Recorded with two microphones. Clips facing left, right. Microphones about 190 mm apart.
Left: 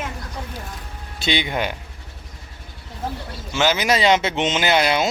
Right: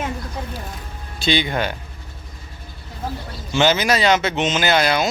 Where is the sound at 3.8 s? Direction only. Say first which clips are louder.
Even; 20° left (ahead or behind).